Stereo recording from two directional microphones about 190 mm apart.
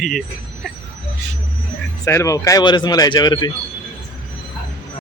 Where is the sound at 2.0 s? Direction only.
15° left (ahead or behind).